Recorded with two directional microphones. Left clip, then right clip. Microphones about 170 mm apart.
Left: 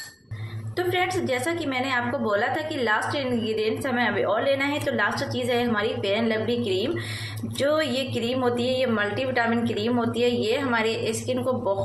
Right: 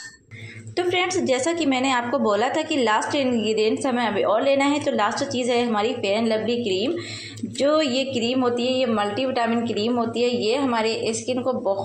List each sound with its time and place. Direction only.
0.7 s a woman's voice: 25° right (ahead or behind); by 11.7 s 10° right (ahead or behind)